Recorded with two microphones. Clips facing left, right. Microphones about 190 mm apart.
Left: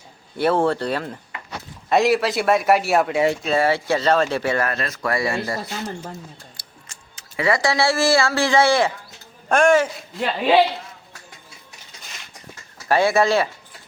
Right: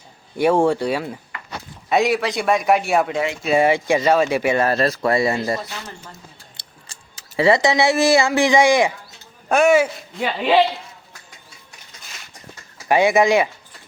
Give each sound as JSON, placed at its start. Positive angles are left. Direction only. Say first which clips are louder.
{"t": 0.3, "sound": "a man's voice", "louder": "right 3 dB", "side_deg": -15}
{"t": 3.4, "sound": "speech", "louder": "right 3 dB", "side_deg": -15}
{"t": 4.6, "sound": "speech", "louder": "right 6 dB", "side_deg": -35}
{"t": 6.6, "sound": "a sound", "louder": "even", "side_deg": -35}
{"t": 9.5, "sound": "speech", "louder": "right 1 dB", "side_deg": -5}
{"t": 12.9, "sound": "speech", "louder": "right 2 dB", "side_deg": -15}